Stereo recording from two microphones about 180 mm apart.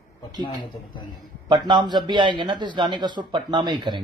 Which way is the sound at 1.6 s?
25° right (ahead or behind).